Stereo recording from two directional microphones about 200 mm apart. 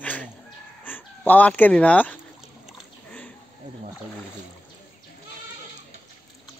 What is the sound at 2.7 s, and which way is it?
Splash, 5° left (ahead or behind).